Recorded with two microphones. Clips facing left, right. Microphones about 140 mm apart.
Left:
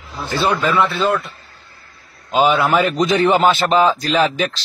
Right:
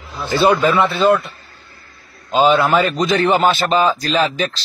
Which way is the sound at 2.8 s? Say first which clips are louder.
Left 1 dB; centre (ahead or behind).